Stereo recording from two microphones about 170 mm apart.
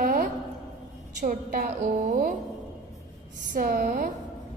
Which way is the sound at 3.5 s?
55° right (ahead or behind).